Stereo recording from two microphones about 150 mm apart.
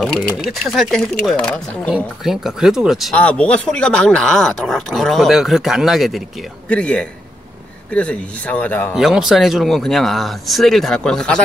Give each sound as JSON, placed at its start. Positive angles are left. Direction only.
{"t": 0.0, "sound": "speech", "side_deg": 0}
{"t": 2.2, "sound": "speech", "side_deg": -5}
{"t": 8.9, "sound": "speech", "side_deg": 0}